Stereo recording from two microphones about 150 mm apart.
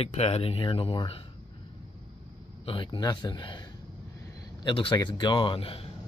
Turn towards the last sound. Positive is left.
turn(degrees=40)  # may be behind; listen again after turning